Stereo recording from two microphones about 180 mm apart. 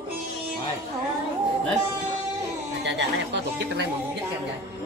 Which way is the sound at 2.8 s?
75° right (ahead or behind).